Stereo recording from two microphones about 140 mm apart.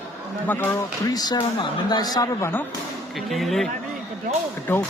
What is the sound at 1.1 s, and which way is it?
Speech, 30° left (ahead or behind).